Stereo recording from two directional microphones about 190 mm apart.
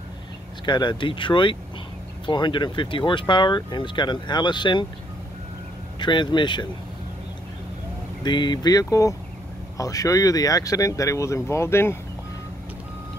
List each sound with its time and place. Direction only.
0.7 s speech: 25° left (ahead or behind)
5.9 s speech: 25° left (ahead or behind)
8.2 s speech: 25° left (ahead or behind)